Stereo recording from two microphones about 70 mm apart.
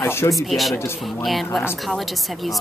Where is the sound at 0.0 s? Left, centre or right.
Left.